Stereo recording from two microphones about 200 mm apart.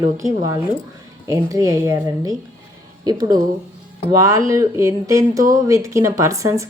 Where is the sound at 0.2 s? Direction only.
15° right (ahead or behind).